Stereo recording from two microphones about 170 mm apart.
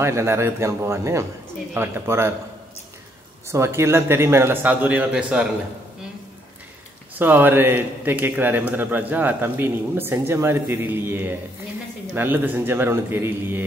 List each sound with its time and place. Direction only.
0.0 s speech: 15° right (ahead or behind)
3.4 s speech: 15° right (ahead or behind)
7.2 s speech: 10° right (ahead or behind)